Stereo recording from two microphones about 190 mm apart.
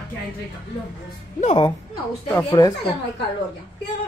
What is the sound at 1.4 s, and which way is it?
Speech, 30° left (ahead or behind).